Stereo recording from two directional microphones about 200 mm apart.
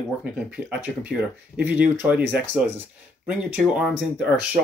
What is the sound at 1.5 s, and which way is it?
Speech, 5° right (ahead or behind).